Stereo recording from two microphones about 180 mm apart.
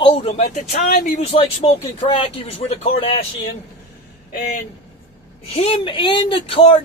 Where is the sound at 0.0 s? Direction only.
30° left (ahead or behind).